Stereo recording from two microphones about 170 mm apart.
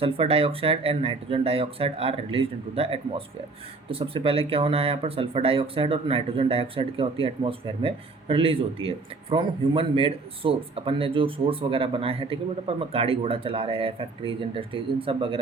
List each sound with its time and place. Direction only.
0.0 s speech: 35° right (ahead or behind)